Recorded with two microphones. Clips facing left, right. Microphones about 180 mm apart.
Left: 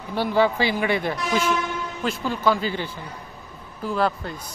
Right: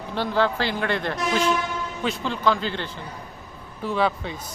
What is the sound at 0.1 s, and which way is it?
Speech, 10° left (ahead or behind).